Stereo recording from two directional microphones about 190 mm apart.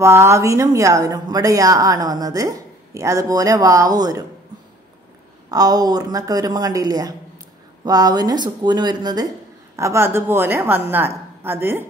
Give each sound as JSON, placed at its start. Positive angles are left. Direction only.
{"t": 0.0, "sound": "a woman's voice", "side_deg": -15}
{"t": 5.5, "sound": "a woman's voice", "side_deg": -20}